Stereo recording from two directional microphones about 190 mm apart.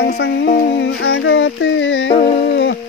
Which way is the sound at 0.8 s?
75° left (ahead or behind).